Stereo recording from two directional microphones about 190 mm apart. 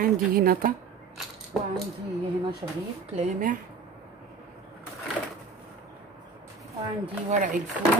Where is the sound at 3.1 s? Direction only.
45° right (ahead or behind).